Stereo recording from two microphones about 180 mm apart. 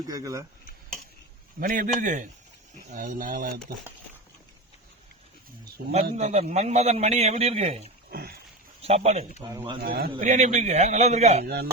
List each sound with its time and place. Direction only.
0.1 s speech: 20° right (ahead or behind)
1.5 s speech: 50° right (ahead or behind)
6.1 s a man's voice: 40° right (ahead or behind)
8.1 s a sound: 60° right (ahead or behind)
8.8 s speech: 35° right (ahead or behind)
9.4 s speech: 20° right (ahead or behind)
9.8 s a sound: 55° right (ahead or behind)
10.2 s a man's voice: 40° right (ahead or behind)
11.4 s a sound: 60° right (ahead or behind)